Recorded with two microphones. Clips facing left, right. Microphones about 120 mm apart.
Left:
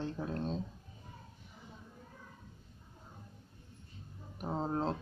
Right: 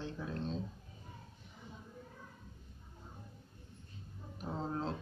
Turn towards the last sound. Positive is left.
turn(degrees=35)  # may be behind; listen again after turning